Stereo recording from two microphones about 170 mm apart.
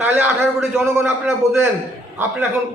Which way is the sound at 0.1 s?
10° right (ahead or behind).